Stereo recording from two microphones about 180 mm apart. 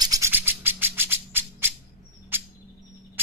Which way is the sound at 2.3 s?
10° right (ahead or behind).